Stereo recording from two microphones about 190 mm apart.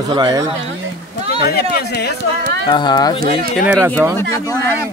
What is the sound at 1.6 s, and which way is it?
Speech, 55° left (ahead or behind).